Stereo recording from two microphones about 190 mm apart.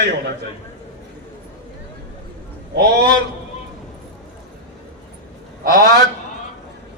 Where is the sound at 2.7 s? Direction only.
60° right (ahead or behind).